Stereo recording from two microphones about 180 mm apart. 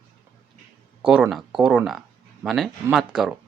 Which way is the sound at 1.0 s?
5° right (ahead or behind).